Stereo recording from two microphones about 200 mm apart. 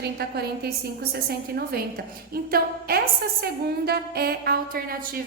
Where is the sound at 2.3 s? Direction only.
50° right (ahead or behind).